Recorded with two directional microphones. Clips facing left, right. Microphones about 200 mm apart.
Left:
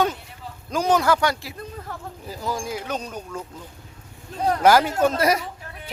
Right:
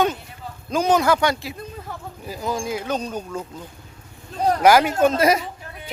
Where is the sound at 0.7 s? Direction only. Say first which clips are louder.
Right 2 dB; 20° right (ahead or behind).